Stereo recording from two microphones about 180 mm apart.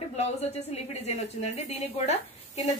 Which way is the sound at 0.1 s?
40° left (ahead or behind).